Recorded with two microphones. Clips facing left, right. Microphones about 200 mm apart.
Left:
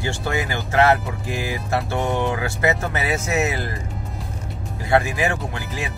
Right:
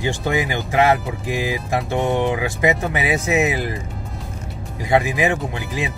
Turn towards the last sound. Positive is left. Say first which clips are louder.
# right 3 dB
turn(degrees=-20)  # may be behind; listen again after turning